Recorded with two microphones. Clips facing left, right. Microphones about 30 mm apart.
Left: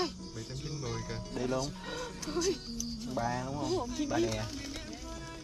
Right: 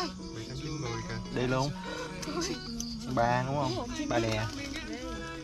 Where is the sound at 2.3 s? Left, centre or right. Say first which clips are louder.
Left 3 dB; centre.